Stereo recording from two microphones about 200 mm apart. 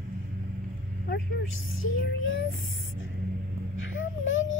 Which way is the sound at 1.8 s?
70° left (ahead or behind).